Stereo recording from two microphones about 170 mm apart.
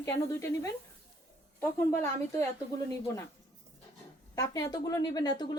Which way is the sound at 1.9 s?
15° left (ahead or behind).